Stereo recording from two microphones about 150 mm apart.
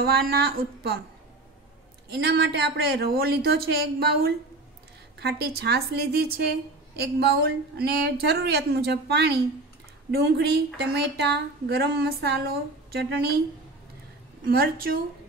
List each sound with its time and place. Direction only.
0.0 s a woman's voice: 90° right
2.0 s a woman's voice: 90° right
14.4 s a woman's voice: 85° right